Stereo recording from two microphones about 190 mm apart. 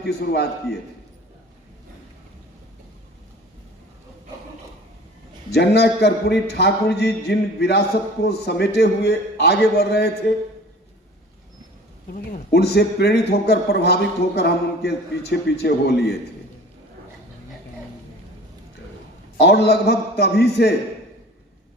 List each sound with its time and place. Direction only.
0.0 s a man's voice: 60° left (ahead or behind)
5.5 s a man's voice: 60° left (ahead or behind)
12.3 s a man's voice: 55° left (ahead or behind)
19.4 s a man's voice: 60° left (ahead or behind)